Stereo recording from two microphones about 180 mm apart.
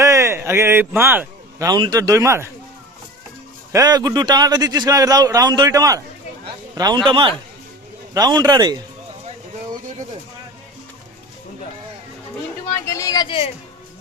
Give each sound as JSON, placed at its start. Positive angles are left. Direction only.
{"t": 0.0, "sound": "speech", "side_deg": -15}
{"t": 3.7, "sound": "a man's voice", "side_deg": -20}
{"t": 12.8, "sound": "speech", "side_deg": 15}